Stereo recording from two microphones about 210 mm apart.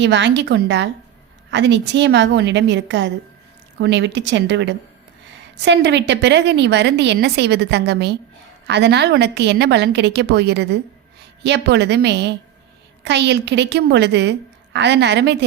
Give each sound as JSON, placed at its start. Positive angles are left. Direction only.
{"t": 0.0, "sound": "a woman's voice", "side_deg": -55}